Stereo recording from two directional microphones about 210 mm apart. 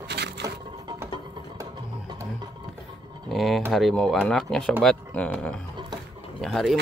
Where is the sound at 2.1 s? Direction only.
20° right (ahead or behind).